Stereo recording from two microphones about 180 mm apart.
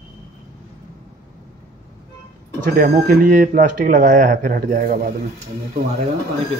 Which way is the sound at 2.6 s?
55° right (ahead or behind).